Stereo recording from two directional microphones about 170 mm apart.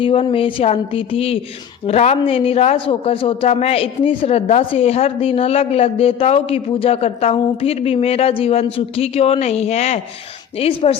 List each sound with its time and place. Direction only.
0.0 s a man's voice: 35° left (ahead or behind)